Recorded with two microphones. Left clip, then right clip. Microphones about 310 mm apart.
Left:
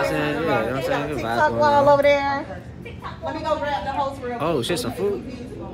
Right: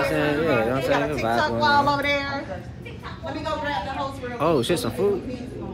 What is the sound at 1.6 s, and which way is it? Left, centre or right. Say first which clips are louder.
Speech: left 6 dB; left.